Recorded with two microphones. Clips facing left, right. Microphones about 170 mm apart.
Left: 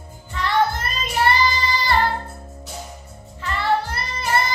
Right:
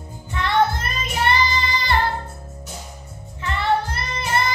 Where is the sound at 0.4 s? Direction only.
20° right (ahead or behind).